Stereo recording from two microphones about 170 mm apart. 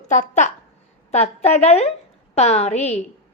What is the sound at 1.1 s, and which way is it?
A woman's voice, 40° left (ahead or behind).